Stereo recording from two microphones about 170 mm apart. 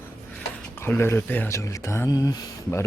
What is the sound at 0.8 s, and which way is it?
Speech, 15° left (ahead or behind).